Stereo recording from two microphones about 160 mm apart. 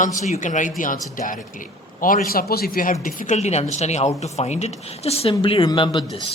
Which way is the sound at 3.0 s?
50° left (ahead or behind).